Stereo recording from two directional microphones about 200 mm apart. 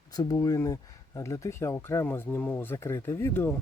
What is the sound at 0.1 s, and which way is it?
Speech, 20° left (ahead or behind).